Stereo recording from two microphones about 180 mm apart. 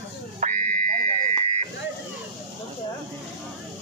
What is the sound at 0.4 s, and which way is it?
Buzzer, 45° right (ahead or behind).